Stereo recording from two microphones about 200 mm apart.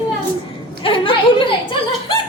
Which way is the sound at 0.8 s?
25° left (ahead or behind).